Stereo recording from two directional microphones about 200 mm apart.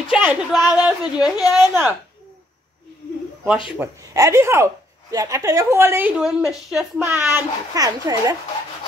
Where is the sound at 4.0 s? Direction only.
15° right (ahead or behind).